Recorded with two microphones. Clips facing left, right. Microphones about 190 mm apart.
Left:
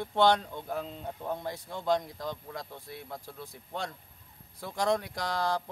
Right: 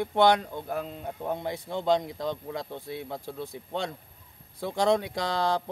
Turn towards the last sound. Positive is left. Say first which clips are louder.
# right 4 dB
turn(degrees=-25)  # may be behind; listen again after turning